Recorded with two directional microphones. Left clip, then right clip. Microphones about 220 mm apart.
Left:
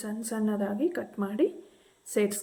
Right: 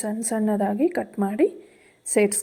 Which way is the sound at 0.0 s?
30° right (ahead or behind).